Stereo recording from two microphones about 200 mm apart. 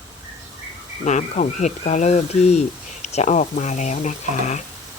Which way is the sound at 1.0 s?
35° left (ahead or behind).